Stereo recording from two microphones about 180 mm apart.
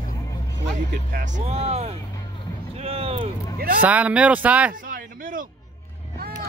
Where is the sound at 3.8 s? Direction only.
10° right (ahead or behind).